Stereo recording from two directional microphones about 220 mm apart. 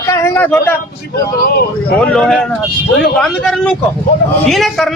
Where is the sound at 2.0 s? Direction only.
Centre (ahead or behind).